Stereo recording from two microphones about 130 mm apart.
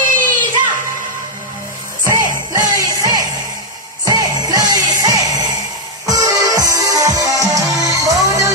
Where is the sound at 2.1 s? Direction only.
25° right (ahead or behind).